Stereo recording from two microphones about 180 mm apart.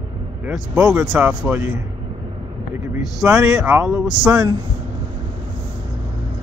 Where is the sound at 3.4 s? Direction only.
5° right (ahead or behind).